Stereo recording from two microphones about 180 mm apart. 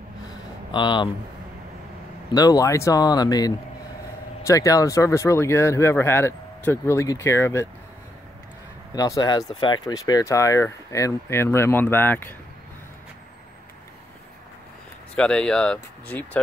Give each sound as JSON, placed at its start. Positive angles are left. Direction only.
{"t": 0.7, "sound": "speech", "side_deg": 25}
{"t": 2.3, "sound": "speech", "side_deg": 20}
{"t": 8.9, "sound": "speech", "side_deg": 20}
{"t": 15.1, "sound": "speech", "side_deg": 5}